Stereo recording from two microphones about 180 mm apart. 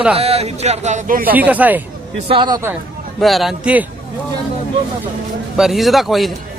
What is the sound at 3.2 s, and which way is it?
Speech, centre (ahead or behind).